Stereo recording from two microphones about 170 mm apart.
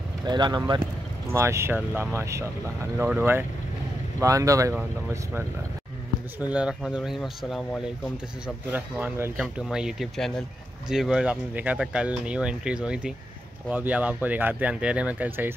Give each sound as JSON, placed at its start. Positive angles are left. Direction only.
{"t": 0.2, "sound": "speech", "side_deg": -25}
{"t": 6.4, "sound": "speech", "side_deg": -5}
{"t": 8.7, "sound": "speech", "side_deg": -10}